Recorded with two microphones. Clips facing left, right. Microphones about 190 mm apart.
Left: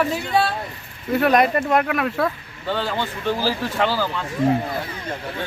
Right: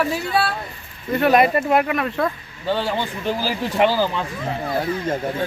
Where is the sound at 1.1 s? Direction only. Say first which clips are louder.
Right 1 dB; centre (ahead or behind).